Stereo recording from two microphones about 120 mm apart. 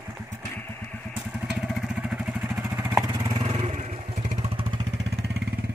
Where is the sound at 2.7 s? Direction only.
20° right (ahead or behind).